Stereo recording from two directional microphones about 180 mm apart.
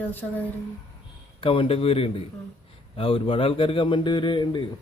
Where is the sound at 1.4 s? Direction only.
30° left (ahead or behind).